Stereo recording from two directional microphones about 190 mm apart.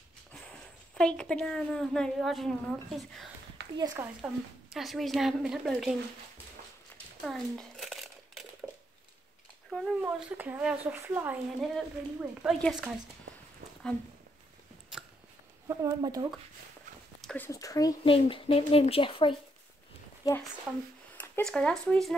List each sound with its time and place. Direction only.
0.3 s speech: 5° left (ahead or behind)
3.7 s speech: 20° right (ahead or behind)
4.2 s a woman's voice: centre (ahead or behind)
7.2 s crumpling: centre (ahead or behind)
9.7 s a woman's voice: centre (ahead or behind)
15.7 s speech: 20° right (ahead or behind)
17.2 s a sound: 5° left (ahead or behind)
17.5 s speech: 15° left (ahead or behind)
21.2 s speech: 5° left (ahead or behind)